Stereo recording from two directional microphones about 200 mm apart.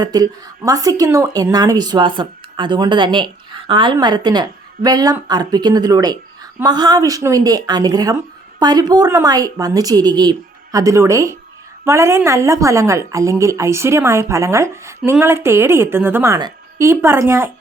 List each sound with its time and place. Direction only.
0.0 s a woman's voice: 20° right (ahead or behind)